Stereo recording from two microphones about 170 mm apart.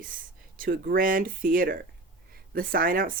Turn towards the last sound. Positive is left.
turn(degrees=-55)  # may be behind; listen again after turning